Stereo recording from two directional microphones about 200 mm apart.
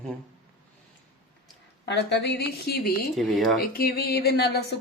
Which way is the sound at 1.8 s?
60° left (ahead or behind).